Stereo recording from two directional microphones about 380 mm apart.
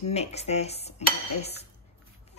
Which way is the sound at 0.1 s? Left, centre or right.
Centre.